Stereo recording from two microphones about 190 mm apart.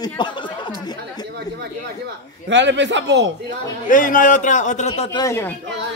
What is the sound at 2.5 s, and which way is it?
Speech, 70° right (ahead or behind).